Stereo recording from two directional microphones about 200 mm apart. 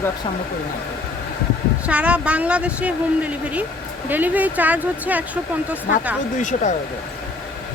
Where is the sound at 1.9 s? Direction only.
5° right (ahead or behind).